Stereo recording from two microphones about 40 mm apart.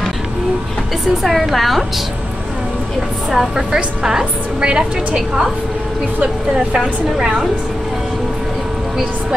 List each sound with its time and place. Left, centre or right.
1.2 s a woman's voice: centre
3.3 s a woman's voice: centre
6.8 s a woman's voice: centre